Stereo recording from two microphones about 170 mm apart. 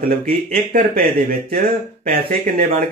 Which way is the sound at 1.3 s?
60° right (ahead or behind).